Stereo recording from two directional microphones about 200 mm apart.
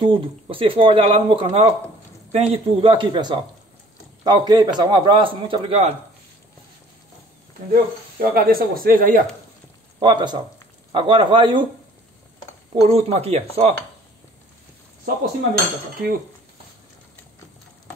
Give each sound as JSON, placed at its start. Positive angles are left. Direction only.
{"t": 0.0, "sound": "a man's voice", "side_deg": -25}
{"t": 7.7, "sound": "speech", "side_deg": -45}
{"t": 9.9, "sound": "a man's voice", "side_deg": -20}
{"t": 12.8, "sound": "speech", "side_deg": -30}
{"t": 15.5, "sound": "speech", "side_deg": -45}